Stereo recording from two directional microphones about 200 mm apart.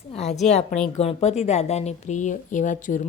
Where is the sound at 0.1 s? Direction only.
30° left (ahead or behind).